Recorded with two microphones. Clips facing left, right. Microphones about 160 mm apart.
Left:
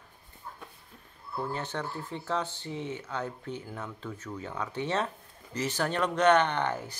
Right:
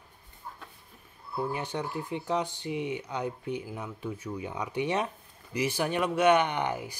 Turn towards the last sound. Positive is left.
turn(degrees=-10)  # may be behind; listen again after turning